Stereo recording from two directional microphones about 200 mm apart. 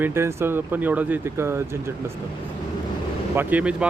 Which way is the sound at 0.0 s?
10° right (ahead or behind).